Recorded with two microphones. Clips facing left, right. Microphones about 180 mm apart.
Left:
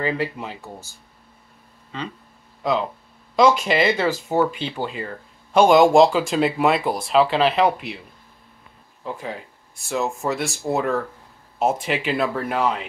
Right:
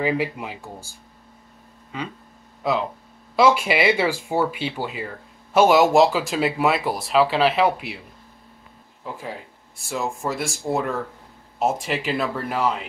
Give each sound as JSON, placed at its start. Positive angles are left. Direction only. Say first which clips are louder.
{"t": 0.0, "sound": "speech", "louder": "right 1 dB", "side_deg": -10}
{"t": 1.9, "sound": "speech", "louder": "even", "side_deg": -10}
{"t": 3.3, "sound": "speech", "louder": "left 1 dB", "side_deg": -10}
{"t": 9.8, "sound": "speech", "louder": "left 3 dB", "side_deg": 0}